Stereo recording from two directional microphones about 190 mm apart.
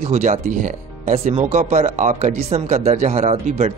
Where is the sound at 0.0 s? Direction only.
40° right (ahead or behind).